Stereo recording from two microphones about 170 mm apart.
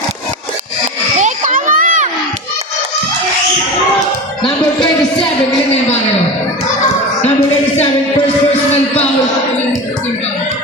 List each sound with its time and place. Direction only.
1.2 s crowd: 50° right (ahead or behind)
4.4 s speech: 5° left (ahead or behind)